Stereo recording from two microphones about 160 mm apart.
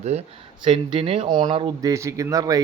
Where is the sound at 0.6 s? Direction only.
30° right (ahead or behind).